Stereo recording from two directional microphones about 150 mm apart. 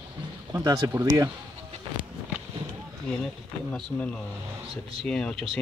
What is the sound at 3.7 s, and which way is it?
Speech, 5° left (ahead or behind).